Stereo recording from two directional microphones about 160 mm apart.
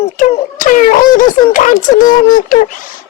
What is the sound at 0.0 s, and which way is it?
Speech, 45° left (ahead or behind).